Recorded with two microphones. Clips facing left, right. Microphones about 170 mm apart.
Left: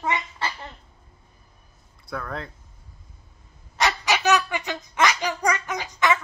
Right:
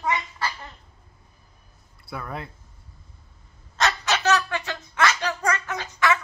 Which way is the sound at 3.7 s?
10° left (ahead or behind).